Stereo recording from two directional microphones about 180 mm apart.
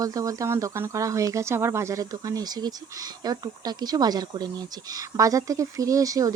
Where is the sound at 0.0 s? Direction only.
20° right (ahead or behind).